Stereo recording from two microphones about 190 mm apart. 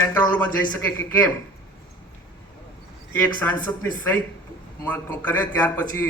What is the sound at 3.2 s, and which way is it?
A man's voice, 10° left (ahead or behind).